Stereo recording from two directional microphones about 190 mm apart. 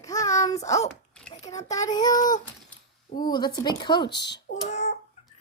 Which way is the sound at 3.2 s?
20° left (ahead or behind).